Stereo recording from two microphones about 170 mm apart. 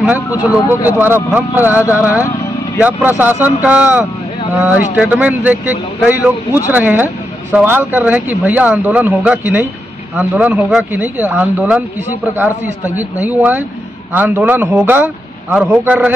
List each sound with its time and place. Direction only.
0.4 s speech: 10° right (ahead or behind)